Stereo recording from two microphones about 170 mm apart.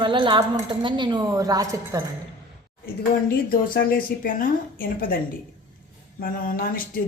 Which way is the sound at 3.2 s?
55° left (ahead or behind).